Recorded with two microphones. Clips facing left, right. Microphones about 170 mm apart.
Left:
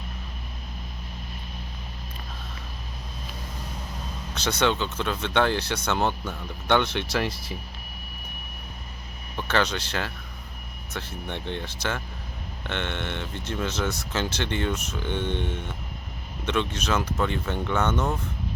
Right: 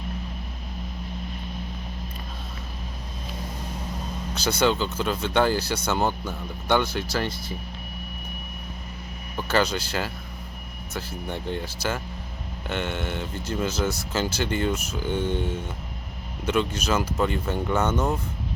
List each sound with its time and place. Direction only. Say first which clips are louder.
4.4 s speech: right 2 dB; 5° right (ahead or behind)
9.3 s speech: right 2 dB; 5° right (ahead or behind)